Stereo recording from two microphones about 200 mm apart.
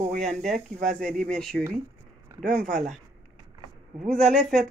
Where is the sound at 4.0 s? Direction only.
35° right (ahead or behind).